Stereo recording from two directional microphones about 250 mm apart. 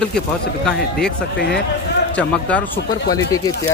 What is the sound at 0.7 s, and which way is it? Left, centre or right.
Speech, centre.